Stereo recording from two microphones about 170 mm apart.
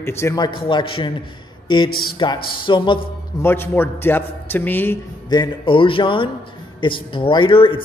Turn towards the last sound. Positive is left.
turn(degrees=30)  # may be behind; listen again after turning